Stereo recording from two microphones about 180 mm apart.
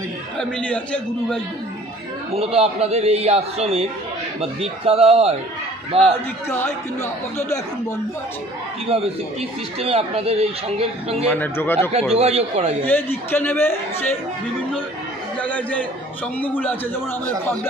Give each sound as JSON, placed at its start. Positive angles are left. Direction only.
{"t": 0.4, "sound": "a man's voice", "side_deg": 5}
{"t": 2.3, "sound": "a man's voice", "side_deg": -35}
{"t": 6.5, "sound": "speech", "side_deg": 15}
{"t": 8.8, "sound": "a man's voice", "side_deg": -35}
{"t": 11.2, "sound": "speech", "side_deg": 10}
{"t": 12.1, "sound": "a man's voice", "side_deg": -35}
{"t": 12.8, "sound": "speech", "side_deg": 10}
{"t": 15.3, "sound": "a man's voice", "side_deg": 10}